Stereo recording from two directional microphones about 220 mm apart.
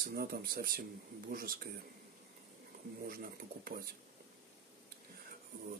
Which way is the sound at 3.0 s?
45° right (ahead or behind).